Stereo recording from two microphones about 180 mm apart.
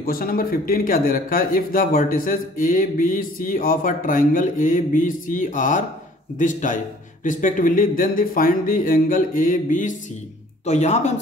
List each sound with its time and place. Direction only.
0.0 s a man's voice: 55° left (ahead or behind)